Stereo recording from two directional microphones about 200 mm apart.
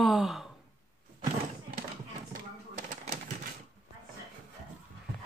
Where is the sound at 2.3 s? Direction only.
35° right (ahead or behind).